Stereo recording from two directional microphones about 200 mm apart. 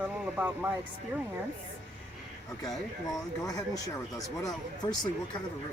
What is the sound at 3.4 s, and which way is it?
Speech, 15° left (ahead or behind).